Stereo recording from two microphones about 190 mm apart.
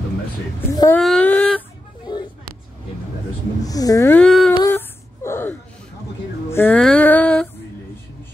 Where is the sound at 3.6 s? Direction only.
20° left (ahead or behind).